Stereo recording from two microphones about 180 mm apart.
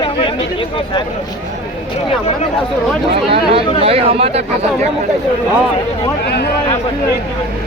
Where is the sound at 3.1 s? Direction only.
30° right (ahead or behind).